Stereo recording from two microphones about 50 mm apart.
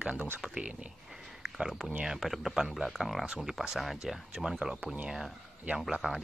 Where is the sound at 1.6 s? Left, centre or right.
Centre.